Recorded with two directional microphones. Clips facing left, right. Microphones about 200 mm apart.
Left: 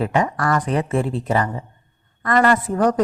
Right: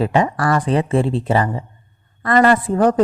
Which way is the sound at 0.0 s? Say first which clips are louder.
Right 3 dB; 30° right (ahead or behind).